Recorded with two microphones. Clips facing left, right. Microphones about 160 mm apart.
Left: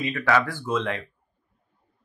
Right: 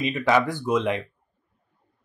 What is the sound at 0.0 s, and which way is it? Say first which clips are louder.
Speech: right 2 dB; 20° right (ahead or behind).